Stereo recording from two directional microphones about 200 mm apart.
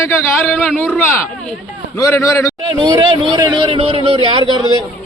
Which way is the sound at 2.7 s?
25° right (ahead or behind).